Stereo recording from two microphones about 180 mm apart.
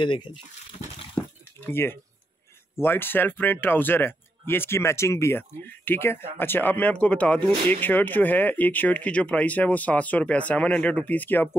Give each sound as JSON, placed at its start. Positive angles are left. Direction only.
{"t": 0.0, "sound": "speech", "side_deg": 25}
{"t": 1.2, "sound": "a sound", "side_deg": 15}
{"t": 1.7, "sound": "speech", "side_deg": 15}